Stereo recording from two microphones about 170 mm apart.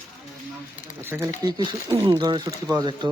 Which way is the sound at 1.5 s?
25° right (ahead or behind).